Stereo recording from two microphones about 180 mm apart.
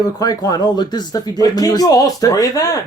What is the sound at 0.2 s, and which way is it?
Speech, 20° left (ahead or behind).